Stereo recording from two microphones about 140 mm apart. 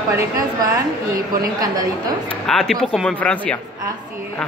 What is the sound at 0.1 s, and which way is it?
Speech, 20° right (ahead or behind).